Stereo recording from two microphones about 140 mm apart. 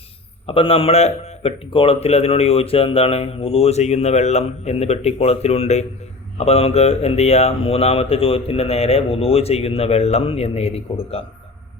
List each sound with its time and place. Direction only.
0.4 s a man's voice: 40° left (ahead or behind)